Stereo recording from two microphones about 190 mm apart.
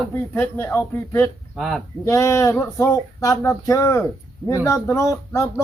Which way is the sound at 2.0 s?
15° left (ahead or behind).